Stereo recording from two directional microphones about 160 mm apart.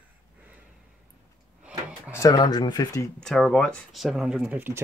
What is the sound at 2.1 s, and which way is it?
Speech, 20° left (ahead or behind).